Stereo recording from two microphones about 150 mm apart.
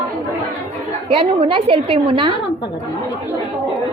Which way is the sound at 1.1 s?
35° right (ahead or behind).